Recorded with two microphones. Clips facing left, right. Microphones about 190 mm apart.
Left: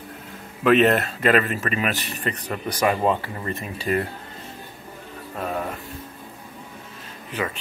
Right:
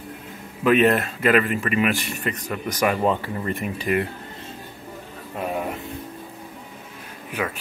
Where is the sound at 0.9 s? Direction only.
40° left (ahead or behind).